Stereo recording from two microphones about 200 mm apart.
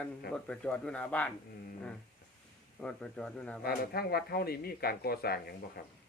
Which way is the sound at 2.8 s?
5° left (ahead or behind).